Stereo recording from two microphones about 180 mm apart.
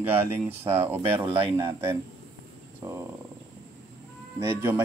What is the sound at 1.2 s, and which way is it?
Speech, 30° right (ahead or behind).